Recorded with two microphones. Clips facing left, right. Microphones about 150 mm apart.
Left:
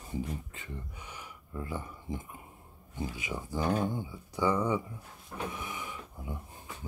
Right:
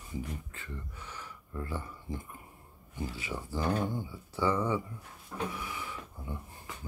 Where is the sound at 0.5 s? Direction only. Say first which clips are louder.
Even; 20° left (ahead or behind).